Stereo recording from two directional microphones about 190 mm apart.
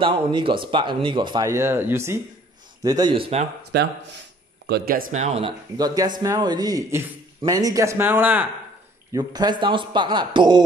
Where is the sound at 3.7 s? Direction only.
60° right (ahead or behind); by 8.4 s 10° right (ahead or behind).